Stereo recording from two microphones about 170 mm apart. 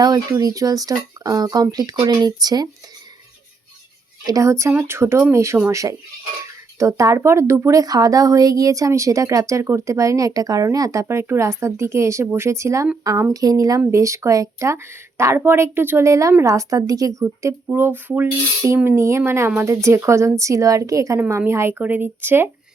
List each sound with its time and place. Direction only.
0.0 s speech: 20° right (ahead or behind)
4.3 s speech: 20° right (ahead or behind)